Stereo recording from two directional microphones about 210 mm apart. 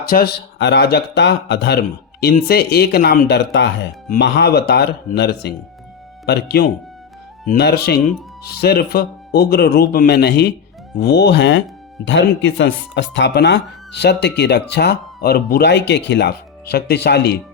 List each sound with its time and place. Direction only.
0.0 s speech: 45° left (ahead or behind)